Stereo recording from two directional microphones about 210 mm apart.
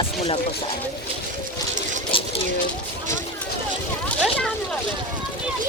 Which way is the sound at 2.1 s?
25° left (ahead or behind).